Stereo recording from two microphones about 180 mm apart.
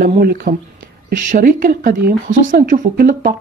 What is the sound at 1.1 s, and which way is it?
Speech, 50° right (ahead or behind).